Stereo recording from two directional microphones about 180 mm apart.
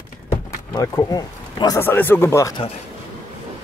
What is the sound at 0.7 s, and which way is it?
Speech, 15° left (ahead or behind).